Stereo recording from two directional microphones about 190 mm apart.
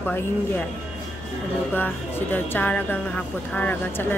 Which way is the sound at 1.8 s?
10° left (ahead or behind).